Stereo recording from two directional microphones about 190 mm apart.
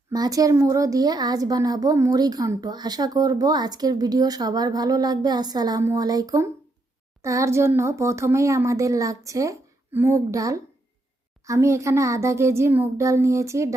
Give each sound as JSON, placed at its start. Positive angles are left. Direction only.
{"t": 0.1, "sound": "a woman's voice", "side_deg": -20}